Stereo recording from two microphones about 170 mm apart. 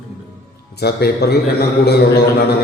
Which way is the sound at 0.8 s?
70° left (ahead or behind).